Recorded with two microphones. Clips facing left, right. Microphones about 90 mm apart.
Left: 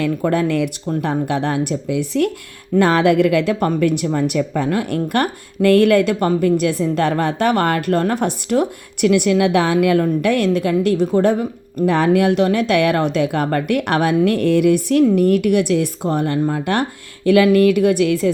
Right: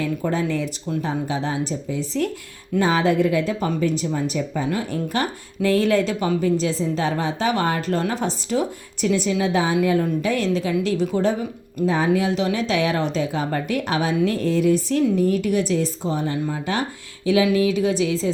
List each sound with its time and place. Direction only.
0.3 s speech: 60° left (ahead or behind)